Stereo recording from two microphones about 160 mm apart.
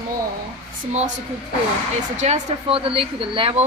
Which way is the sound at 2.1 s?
50° right (ahead or behind).